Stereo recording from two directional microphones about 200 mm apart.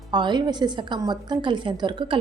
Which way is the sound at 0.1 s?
20° right (ahead or behind).